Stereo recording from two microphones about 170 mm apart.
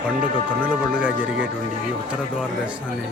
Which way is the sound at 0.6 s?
5° right (ahead or behind).